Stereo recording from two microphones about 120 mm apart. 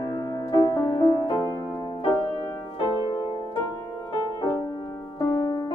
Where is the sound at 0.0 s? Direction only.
35° left (ahead or behind).